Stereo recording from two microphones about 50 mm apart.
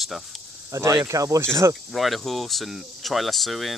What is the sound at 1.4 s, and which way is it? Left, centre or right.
Speech, right.